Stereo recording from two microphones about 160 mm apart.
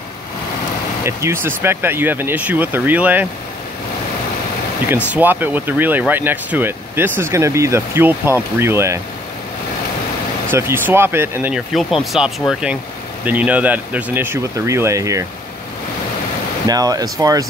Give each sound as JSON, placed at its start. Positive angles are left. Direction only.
{"t": 1.0, "sound": "speech", "side_deg": -15}
{"t": 4.8, "sound": "speech", "side_deg": -10}
{"t": 10.5, "sound": "speech", "side_deg": -15}
{"t": 11.7, "sound": "speech", "side_deg": 0}
{"t": 16.6, "sound": "speech", "side_deg": -25}